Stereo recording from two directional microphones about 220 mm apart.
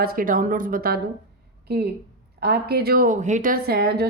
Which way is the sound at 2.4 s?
45° right (ahead or behind).